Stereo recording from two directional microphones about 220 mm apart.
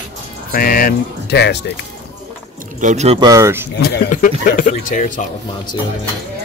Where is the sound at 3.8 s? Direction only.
40° left (ahead or behind).